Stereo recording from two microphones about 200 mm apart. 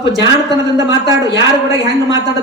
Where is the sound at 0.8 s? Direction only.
20° right (ahead or behind).